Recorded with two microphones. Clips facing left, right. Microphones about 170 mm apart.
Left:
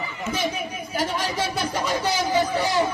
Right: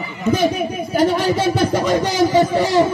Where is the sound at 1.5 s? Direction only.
45° right (ahead or behind).